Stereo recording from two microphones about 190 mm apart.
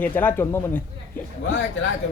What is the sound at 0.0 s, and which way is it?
Speech, 10° left (ahead or behind).